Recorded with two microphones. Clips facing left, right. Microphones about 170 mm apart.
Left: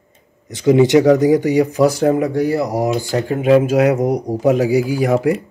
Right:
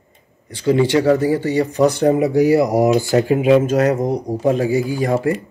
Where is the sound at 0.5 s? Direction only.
15° left (ahead or behind).